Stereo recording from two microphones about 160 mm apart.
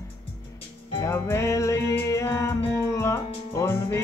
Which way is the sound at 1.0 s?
15° left (ahead or behind).